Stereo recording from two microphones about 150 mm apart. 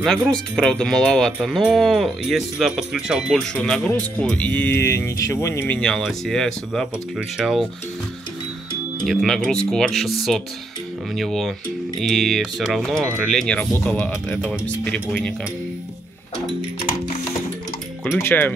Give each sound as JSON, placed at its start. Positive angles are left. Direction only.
{"t": 0.3, "sound": "speech", "side_deg": 5}
{"t": 9.0, "sound": "speech", "side_deg": 0}
{"t": 11.1, "sound": "speech", "side_deg": 0}
{"t": 18.1, "sound": "speech", "side_deg": 15}